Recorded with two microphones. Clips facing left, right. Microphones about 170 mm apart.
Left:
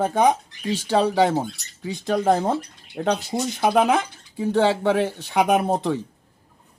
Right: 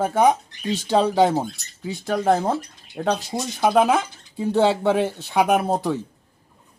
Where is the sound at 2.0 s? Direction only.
5° right (ahead or behind).